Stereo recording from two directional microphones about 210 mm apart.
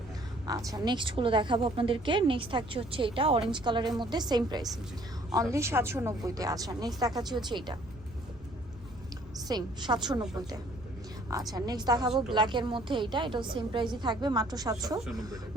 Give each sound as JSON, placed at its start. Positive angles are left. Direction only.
{"t": 0.4, "sound": "a woman's voice", "side_deg": -15}
{"t": 9.5, "sound": "a woman's voice", "side_deg": -20}
{"t": 11.3, "sound": "a woman's voice", "side_deg": -20}